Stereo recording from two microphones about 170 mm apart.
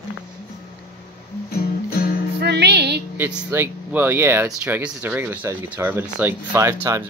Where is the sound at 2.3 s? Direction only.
75° right (ahead or behind).